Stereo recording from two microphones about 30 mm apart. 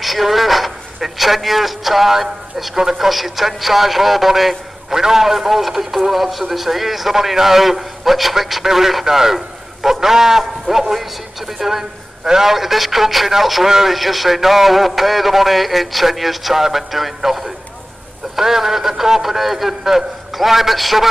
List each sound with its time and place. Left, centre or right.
0.0 s a man's voice: centre
3.1 s a man's voice: centre